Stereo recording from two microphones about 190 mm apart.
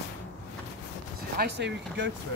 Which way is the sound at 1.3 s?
60° right (ahead or behind).